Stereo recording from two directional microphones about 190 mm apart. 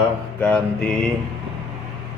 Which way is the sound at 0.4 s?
5° left (ahead or behind).